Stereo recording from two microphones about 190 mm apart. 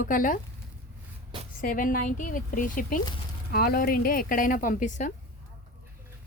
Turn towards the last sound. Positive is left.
turn(degrees=40)  # may be behind; listen again after turning